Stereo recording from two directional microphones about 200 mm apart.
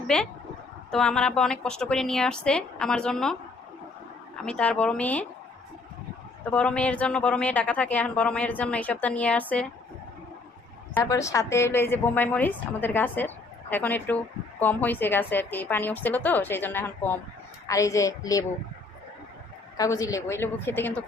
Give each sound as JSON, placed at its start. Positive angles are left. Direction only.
{"t": 0.1, "sound": "a woman's voice", "side_deg": 5}
{"t": 4.4, "sound": "a woman's voice", "side_deg": 5}
{"t": 6.5, "sound": "a woman's voice", "side_deg": 5}
{"t": 10.9, "sound": "a woman's voice", "side_deg": 15}
{"t": 19.7, "sound": "a woman's voice", "side_deg": 15}